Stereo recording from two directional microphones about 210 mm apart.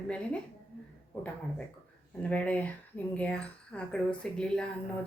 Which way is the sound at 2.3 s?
5° left (ahead or behind).